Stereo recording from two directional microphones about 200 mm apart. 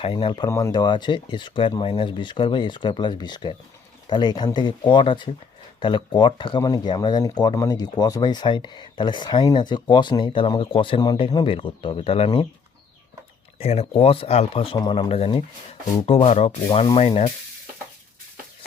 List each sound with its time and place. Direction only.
0.0 s speech: 25° left (ahead or behind)
13.6 s speech: 30° left (ahead or behind)